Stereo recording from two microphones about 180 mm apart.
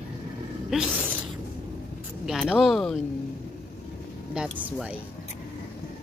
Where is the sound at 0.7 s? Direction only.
5° right (ahead or behind).